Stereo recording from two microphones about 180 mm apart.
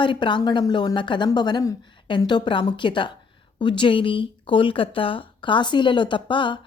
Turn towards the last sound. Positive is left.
turn(degrees=25)  # may be behind; listen again after turning